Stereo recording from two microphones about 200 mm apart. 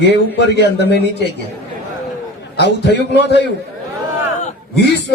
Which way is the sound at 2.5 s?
60° left (ahead or behind).